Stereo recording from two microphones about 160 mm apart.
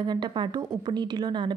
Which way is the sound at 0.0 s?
25° right (ahead or behind).